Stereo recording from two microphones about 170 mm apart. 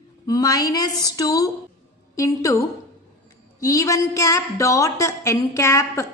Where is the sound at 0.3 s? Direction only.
20° left (ahead or behind).